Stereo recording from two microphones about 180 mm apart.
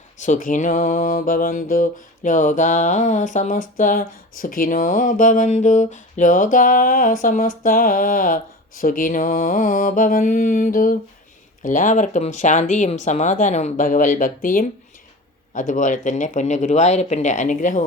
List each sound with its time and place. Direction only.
0.2 s mantra: 45° left (ahead or behind)